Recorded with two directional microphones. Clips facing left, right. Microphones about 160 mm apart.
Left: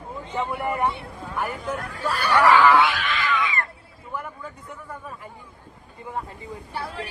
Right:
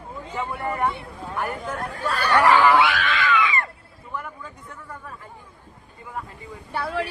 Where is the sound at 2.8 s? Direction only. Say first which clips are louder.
Right 2 dB; 80° right.